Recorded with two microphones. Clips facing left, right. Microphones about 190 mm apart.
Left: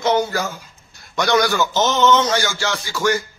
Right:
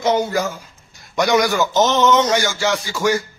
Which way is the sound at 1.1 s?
15° right (ahead or behind).